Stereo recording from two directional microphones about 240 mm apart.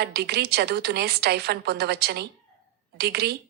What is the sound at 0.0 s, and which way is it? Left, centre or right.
A woman's voice, right.